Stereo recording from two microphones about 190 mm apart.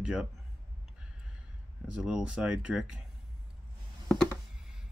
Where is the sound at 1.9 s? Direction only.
5° right (ahead or behind).